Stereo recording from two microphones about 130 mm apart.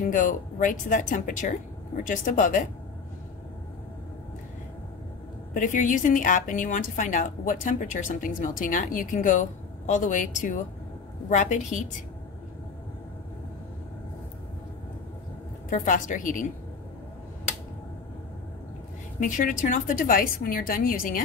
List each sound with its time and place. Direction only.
0.1 s a woman's voice: 90° left
5.5 s a woman's voice: 90° left
11.2 s a woman's voice: 70° left (ahead or behind)
15.7 s a woman's voice: 80° left
19.1 s a woman's voice: 85° left